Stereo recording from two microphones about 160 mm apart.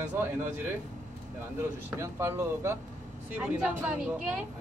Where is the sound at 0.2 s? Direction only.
15° right (ahead or behind).